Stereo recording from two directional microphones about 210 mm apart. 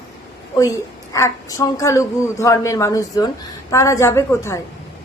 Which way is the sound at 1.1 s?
15° left (ahead or behind).